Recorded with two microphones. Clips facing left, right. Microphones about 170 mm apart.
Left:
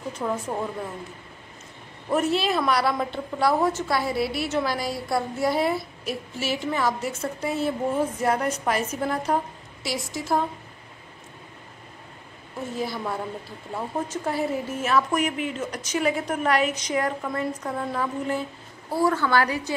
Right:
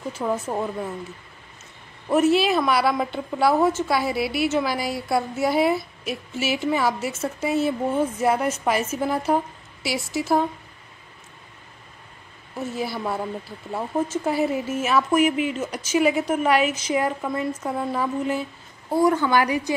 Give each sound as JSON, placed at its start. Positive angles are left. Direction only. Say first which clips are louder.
{"t": 0.1, "sound": "a woman's voice", "louder": "right 2 dB", "side_deg": -10}
{"t": 2.0, "sound": "a woman's voice", "louder": "right 5 dB", "side_deg": -5}
{"t": 12.7, "sound": "a woman's voice", "louder": "right 1 dB", "side_deg": -5}
{"t": 18.9, "sound": "a woman's voice", "louder": "right 3 dB", "side_deg": -15}